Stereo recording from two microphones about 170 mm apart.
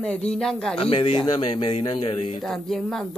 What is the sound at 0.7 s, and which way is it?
A man's voice, 30° left (ahead or behind).